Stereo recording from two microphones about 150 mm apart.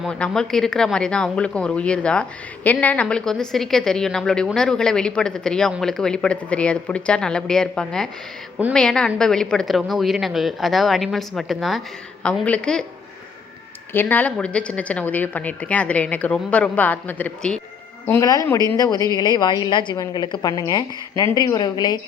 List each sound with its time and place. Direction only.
0.0 s a woman's voice: 5° left (ahead or behind)
13.9 s a woman's voice: 15° left (ahead or behind)